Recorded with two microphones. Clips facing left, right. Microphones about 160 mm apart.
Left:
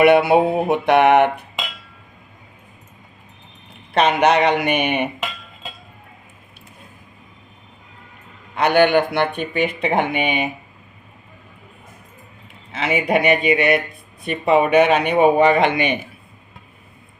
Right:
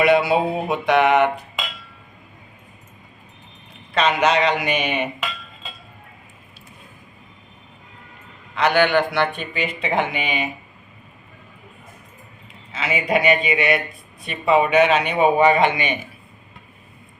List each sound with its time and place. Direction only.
0.0 s a man's voice: 60° left (ahead or behind)
3.9 s a man's voice: 60° left (ahead or behind)
8.5 s a man's voice: 50° left (ahead or behind)
12.7 s a man's voice: 60° left (ahead or behind)